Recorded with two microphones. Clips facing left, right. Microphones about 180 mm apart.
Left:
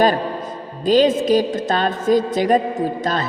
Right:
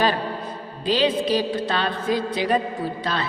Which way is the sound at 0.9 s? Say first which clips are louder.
Left 6 dB; 45° left (ahead or behind).